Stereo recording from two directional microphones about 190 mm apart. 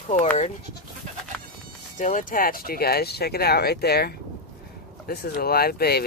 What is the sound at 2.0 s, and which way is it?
Speech, 40° left (ahead or behind).